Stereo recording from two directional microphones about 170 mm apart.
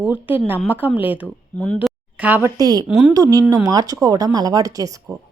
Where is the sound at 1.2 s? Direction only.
10° left (ahead or behind).